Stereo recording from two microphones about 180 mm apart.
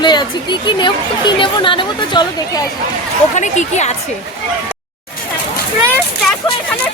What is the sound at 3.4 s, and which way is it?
Speech, 40° left (ahead or behind).